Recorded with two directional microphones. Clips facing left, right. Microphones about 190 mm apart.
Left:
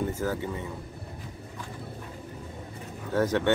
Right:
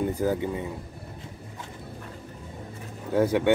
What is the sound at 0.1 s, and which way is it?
Speech, 20° right (ahead or behind).